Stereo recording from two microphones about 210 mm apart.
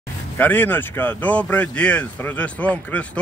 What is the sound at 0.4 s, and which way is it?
Speech, 10° left (ahead or behind).